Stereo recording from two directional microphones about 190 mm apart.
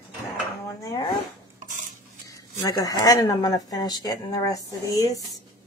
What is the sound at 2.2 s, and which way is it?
Speech, 20° left (ahead or behind).